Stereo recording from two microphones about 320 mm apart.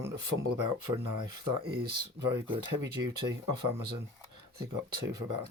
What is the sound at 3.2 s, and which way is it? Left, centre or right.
Speech, right.